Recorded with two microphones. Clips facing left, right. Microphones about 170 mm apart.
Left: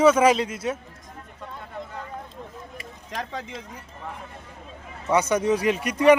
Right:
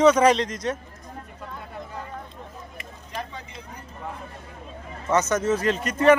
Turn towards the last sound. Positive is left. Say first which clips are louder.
# left 1 dB
turn(degrees=15)  # may be behind; listen again after turning